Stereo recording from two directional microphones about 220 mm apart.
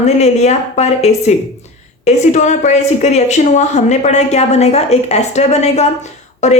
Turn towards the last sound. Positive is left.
turn(degrees=30)  # may be behind; listen again after turning